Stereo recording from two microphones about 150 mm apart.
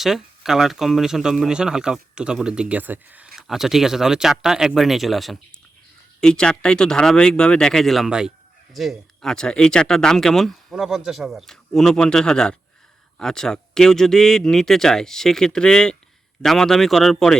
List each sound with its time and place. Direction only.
0.0 s speech: centre (ahead or behind)